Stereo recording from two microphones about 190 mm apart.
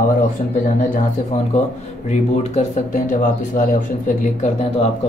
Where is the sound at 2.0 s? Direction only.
40° left (ahead or behind).